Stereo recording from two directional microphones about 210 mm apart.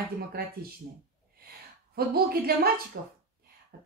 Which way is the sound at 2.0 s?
45° right (ahead or behind).